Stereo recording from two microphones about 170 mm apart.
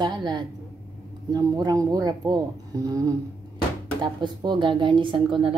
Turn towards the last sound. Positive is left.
turn(degrees=-30)  # may be behind; listen again after turning